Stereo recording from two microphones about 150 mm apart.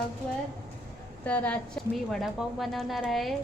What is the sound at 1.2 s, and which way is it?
A woman's voice, 10° left (ahead or behind).